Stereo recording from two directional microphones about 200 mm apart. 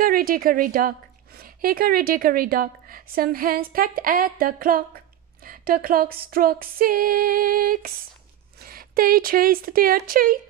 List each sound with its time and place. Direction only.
0.0 s a woman's voice: 45° right (ahead or behind)